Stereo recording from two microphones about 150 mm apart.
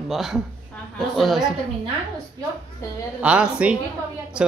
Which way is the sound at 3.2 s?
5° right (ahead or behind).